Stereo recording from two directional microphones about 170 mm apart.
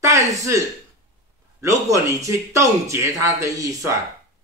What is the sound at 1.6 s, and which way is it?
Speech, 20° right (ahead or behind).